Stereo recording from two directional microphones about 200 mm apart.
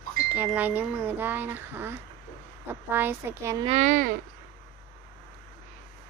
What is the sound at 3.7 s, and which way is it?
Speech, 40° right (ahead or behind).